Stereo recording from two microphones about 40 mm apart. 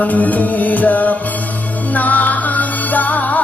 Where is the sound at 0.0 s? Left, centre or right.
Left.